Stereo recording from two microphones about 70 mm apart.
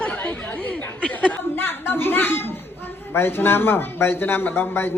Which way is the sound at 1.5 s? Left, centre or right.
Left.